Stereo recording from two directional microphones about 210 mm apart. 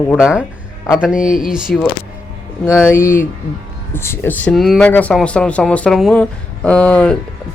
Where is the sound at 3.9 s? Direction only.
10° left (ahead or behind).